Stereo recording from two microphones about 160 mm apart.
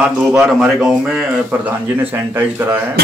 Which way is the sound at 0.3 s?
Centre (ahead or behind).